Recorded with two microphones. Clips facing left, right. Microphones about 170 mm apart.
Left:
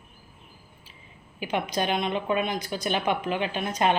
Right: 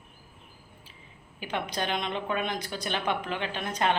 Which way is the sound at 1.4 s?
10° left (ahead or behind).